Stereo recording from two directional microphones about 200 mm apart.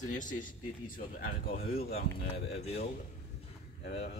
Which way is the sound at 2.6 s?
30° left (ahead or behind).